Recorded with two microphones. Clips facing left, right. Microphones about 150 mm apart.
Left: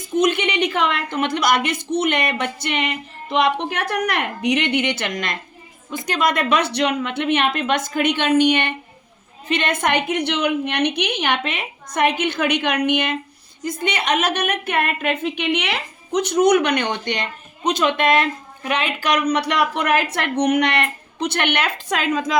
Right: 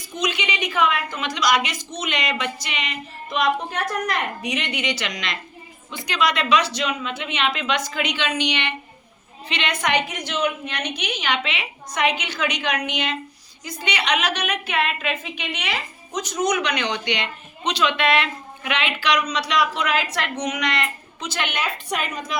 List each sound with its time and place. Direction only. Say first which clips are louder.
0.2 s a woman's voice: left 7 dB; 55° left (ahead or behind); by 22.4 s 90° left